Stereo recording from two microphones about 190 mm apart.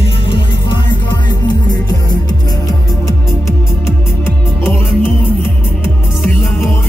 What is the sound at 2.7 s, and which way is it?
Music, 15° left (ahead or behind).